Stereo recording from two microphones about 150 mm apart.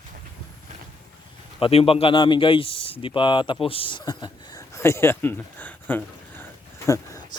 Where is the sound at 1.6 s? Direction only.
40° left (ahead or behind); by 7.2 s 20° left (ahead or behind).